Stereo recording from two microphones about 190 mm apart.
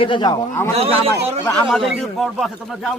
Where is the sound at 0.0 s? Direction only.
25° left (ahead or behind).